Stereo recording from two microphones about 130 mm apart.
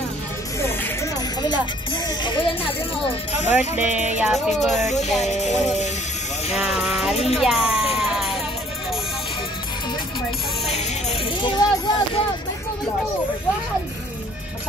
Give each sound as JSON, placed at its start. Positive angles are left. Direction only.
{"t": 0.6, "sound": "a sound", "side_deg": 25}
{"t": 2.0, "sound": "speech", "side_deg": 35}
{"t": 3.1, "sound": "speech", "side_deg": 60}
{"t": 3.5, "sound": "music", "side_deg": -10}
{"t": 4.3, "sound": "speech", "side_deg": 0}
{"t": 4.8, "sound": "speech", "side_deg": 60}
{"t": 6.5, "sound": "speech", "side_deg": -5}
{"t": 7.9, "sound": "music", "side_deg": 0}
{"t": 10.7, "sound": "music", "side_deg": 55}
{"t": 11.4, "sound": "a sound", "side_deg": 35}